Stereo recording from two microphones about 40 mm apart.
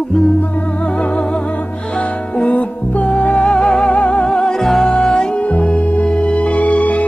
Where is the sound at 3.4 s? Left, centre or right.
Centre.